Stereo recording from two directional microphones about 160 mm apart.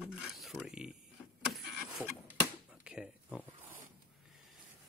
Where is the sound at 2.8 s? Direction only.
5° right (ahead or behind).